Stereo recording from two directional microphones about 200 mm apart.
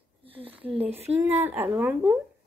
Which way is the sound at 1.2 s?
10° right (ahead or behind).